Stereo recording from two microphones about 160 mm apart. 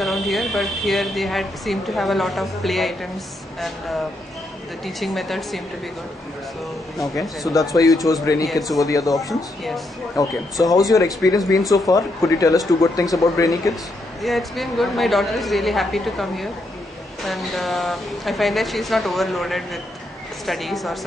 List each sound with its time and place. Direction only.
0.0 s a woman's voice: centre (ahead or behind)
4.8 s a woman's voice: centre (ahead or behind)
7.2 s speech: 20° left (ahead or behind)
14.2 s a woman's voice: centre (ahead or behind)